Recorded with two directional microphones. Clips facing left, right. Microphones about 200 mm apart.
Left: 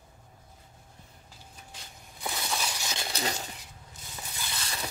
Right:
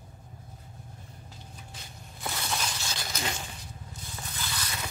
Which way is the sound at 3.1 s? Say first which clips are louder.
Left 2 dB; 40° left (ahead or behind).